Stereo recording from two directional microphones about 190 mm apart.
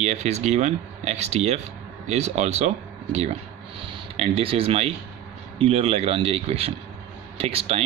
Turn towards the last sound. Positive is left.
turn(degrees=-30)  # may be behind; listen again after turning